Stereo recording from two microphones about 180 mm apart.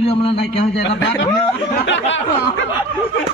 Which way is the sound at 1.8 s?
90° left.